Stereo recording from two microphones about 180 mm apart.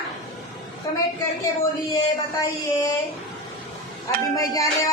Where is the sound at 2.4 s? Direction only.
20° left (ahead or behind).